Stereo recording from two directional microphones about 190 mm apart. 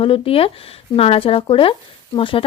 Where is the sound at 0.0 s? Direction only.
30° left (ahead or behind).